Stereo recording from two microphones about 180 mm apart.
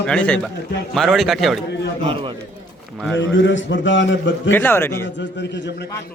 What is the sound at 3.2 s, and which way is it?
A man's voice, 85° left.